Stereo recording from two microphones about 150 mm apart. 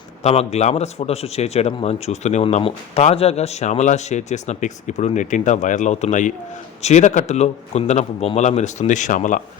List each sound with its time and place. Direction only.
0.2 s a man's voice: 45° left (ahead or behind)